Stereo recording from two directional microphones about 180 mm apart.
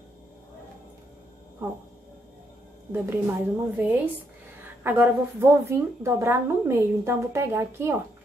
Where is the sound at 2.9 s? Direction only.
10° right (ahead or behind).